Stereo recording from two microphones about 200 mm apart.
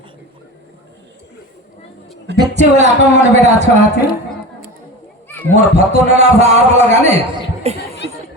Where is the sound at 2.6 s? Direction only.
35° right (ahead or behind).